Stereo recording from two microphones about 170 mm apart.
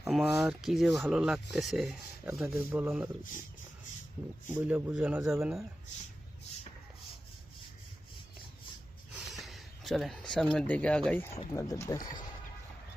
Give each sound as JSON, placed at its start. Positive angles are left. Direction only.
{"t": 0.1, "sound": "speech", "side_deg": 0}
{"t": 2.2, "sound": "speech", "side_deg": -10}
{"t": 4.5, "sound": "speech", "side_deg": -5}
{"t": 9.1, "sound": "a sound", "side_deg": 0}
{"t": 10.5, "sound": "speech", "side_deg": 5}
{"t": 11.5, "sound": "speech", "side_deg": 20}